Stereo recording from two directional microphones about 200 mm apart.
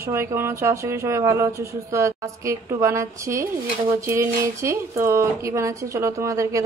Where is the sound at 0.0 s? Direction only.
15° right (ahead or behind).